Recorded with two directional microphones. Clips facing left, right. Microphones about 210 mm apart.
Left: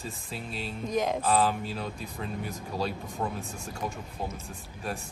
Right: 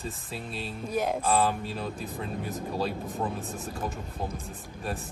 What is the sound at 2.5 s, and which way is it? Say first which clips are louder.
Speech: right 2 dB; centre (ahead or behind).